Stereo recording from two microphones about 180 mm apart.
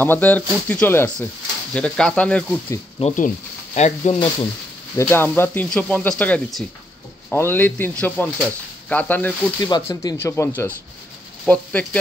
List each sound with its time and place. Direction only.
0.0 s speech: 10° left (ahead or behind)
3.0 s speech: 35° left (ahead or behind)
4.9 s speech: 10° left (ahead or behind)
9.6 s speech: 20° left (ahead or behind)